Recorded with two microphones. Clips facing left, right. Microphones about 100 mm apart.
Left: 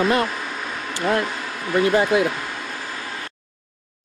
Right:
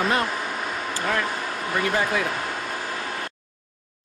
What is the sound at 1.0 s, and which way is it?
Speech, 25° left (ahead or behind).